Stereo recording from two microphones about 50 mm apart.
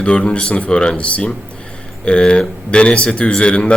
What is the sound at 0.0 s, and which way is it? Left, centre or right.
Speech, left.